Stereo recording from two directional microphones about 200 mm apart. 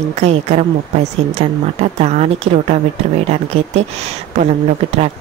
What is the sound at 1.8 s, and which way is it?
A woman's voice, 35° right (ahead or behind).